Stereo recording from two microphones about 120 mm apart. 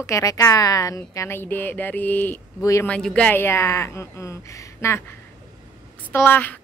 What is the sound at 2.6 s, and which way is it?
Speech, 25° left (ahead or behind).